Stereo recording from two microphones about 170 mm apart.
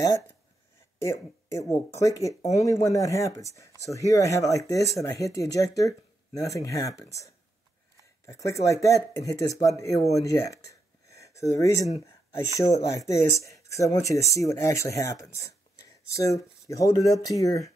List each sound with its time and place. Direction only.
1.0 s speech: 15° left (ahead or behind)
10.2 s a sound: 20° left (ahead or behind)
12.7 s speech: 20° left (ahead or behind)